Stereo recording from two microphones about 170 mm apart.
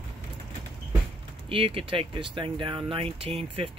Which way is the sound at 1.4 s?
35° right (ahead or behind).